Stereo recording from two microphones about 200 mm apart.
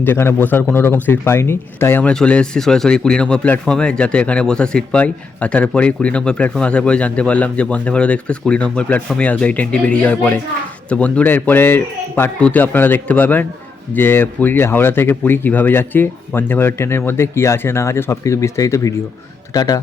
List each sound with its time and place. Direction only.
0.0 s a man's voice: 10° left (ahead or behind)